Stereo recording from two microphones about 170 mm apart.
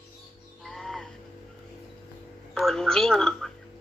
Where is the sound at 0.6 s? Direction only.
5° left (ahead or behind).